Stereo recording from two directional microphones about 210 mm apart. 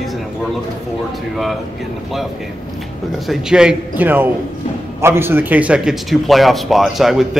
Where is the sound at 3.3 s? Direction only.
5° right (ahead or behind).